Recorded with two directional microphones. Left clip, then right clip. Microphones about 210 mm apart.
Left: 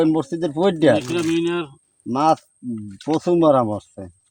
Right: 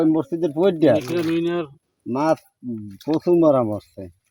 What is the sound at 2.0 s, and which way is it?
Speech, 5° left (ahead or behind).